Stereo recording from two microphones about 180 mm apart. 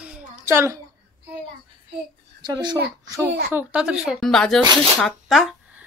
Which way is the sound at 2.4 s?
25° right (ahead or behind).